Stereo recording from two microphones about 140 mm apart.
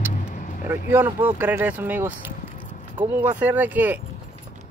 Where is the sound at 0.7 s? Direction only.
15° right (ahead or behind).